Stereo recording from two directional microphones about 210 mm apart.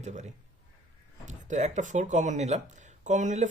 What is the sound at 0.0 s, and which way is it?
A man's voice, 35° right (ahead or behind).